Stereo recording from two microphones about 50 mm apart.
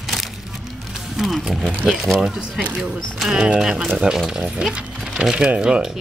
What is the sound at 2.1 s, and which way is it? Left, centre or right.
Speech, centre.